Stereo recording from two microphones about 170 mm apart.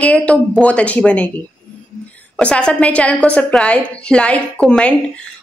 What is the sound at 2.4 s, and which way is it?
A woman's voice, 5° left (ahead or behind).